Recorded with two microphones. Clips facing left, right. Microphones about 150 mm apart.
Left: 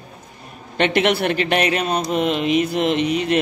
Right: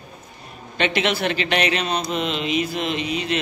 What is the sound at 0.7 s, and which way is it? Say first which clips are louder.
Speech: left 4 dB; 55° left (ahead or behind).